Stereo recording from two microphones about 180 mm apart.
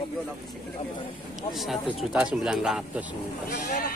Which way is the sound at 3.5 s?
45° left (ahead or behind).